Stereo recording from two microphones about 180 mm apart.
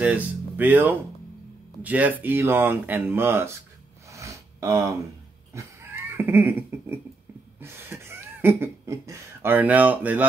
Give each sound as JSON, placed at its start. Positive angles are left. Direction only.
{"t": 0.0, "sound": "speech", "side_deg": -10}
{"t": 4.1, "sound": "a sound", "side_deg": -15}
{"t": 7.6, "sound": "speech", "side_deg": -15}